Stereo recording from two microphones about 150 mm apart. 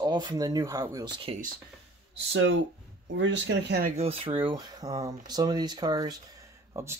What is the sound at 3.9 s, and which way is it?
Speech, 40° right (ahead or behind).